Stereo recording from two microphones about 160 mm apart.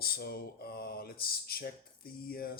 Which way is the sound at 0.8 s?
75° left (ahead or behind).